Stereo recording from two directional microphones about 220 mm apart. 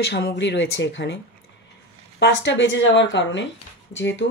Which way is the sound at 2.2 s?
55° left (ahead or behind).